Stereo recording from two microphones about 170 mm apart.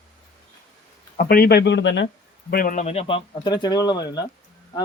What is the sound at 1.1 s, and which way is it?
Speech, 60° left (ahead or behind).